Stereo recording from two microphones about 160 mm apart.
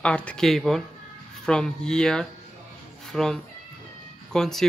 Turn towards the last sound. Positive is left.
turn(degrees=5)  # may be behind; listen again after turning